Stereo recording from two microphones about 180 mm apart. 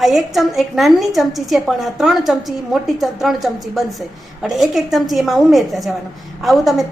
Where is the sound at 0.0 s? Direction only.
Centre (ahead or behind).